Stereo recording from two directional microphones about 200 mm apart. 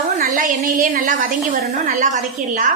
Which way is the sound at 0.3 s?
40° right (ahead or behind).